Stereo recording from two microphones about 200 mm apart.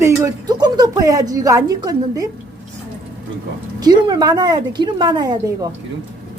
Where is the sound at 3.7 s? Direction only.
20° right (ahead or behind).